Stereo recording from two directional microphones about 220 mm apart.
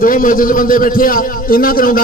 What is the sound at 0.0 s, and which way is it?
A man's voice, 40° left (ahead or behind).